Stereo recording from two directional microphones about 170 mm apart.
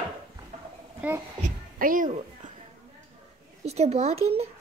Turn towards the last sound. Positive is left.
turn(degrees=-35)  # may be behind; listen again after turning